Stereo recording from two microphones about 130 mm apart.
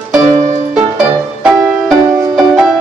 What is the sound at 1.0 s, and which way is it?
Music, 5° right (ahead or behind).